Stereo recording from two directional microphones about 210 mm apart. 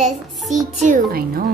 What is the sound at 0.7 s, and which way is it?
Speech, 35° right (ahead or behind).